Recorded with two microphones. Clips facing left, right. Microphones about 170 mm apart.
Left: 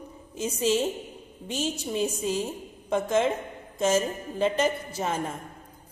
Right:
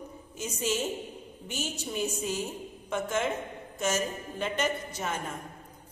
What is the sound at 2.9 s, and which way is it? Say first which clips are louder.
A woman's voice: left 6 dB; 30° left (ahead or behind).